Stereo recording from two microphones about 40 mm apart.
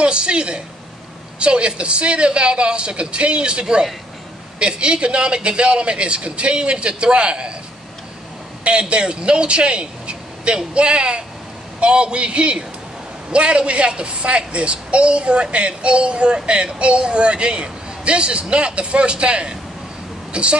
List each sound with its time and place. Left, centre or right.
0.0 s a woman's voice: right
8.6 s a woman's voice: right